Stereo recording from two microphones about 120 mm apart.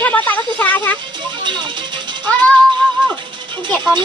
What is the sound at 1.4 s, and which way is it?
Music, 40° right (ahead or behind).